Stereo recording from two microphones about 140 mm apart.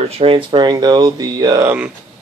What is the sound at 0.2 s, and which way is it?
Speech, 35° right (ahead or behind).